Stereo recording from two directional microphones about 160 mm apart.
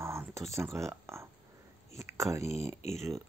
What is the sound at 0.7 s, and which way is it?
Speech, 15° right (ahead or behind).